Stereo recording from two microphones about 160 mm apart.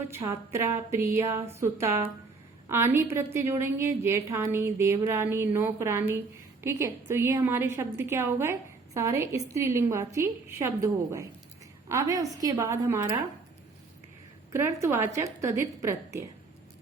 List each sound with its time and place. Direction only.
0.1 s a woman's voice: 15° right (ahead or behind)
14.5 s a woman's voice: 15° right (ahead or behind)